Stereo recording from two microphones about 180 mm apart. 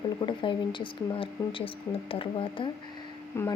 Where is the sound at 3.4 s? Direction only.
15° left (ahead or behind).